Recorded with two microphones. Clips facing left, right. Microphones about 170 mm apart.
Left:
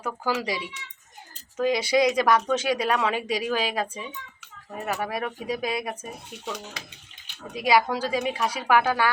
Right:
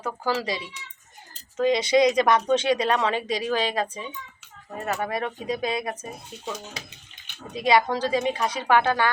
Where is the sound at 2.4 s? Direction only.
25° right (ahead or behind).